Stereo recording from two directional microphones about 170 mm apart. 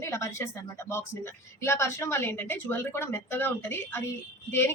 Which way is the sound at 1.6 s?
15° left (ahead or behind).